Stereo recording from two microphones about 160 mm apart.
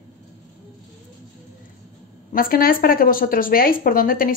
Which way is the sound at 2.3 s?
65° left (ahead or behind).